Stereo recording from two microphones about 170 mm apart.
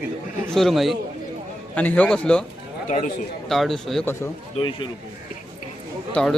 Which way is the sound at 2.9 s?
45° left (ahead or behind).